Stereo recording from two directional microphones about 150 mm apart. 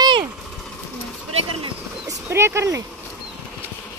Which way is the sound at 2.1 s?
15° right (ahead or behind).